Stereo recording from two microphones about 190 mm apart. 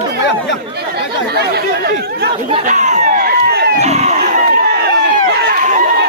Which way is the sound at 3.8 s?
35° right (ahead or behind).